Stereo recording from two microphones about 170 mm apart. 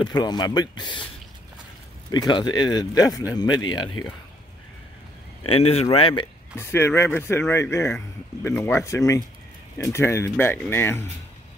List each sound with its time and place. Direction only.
0.0 s speech: 25° left (ahead or behind)
2.0 s speech: 25° left (ahead or behind)
5.4 s speech: 35° left (ahead or behind)
6.5 s speech: 15° left (ahead or behind)